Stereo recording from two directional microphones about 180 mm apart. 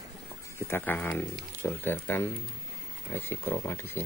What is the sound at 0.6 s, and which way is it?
Speech, 10° left (ahead or behind).